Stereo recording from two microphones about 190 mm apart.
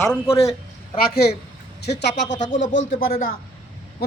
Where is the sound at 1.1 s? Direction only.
55° left (ahead or behind).